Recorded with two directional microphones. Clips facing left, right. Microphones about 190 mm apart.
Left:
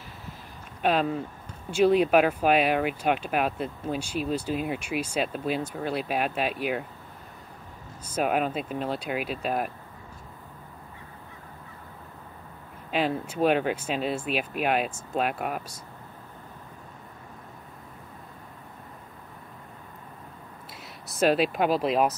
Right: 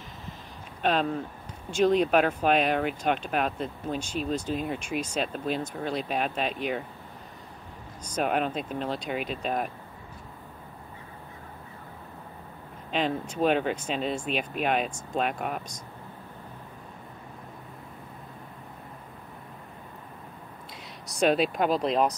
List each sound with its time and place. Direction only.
0.8 s speech: 5° left (ahead or behind)
8.0 s speech: 5° left (ahead or behind)
12.9 s speech: 5° left (ahead or behind)
21.1 s speech: 5° left (ahead or behind)